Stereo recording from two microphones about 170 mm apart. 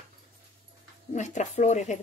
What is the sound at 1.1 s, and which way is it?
Speech, 45° left (ahead or behind).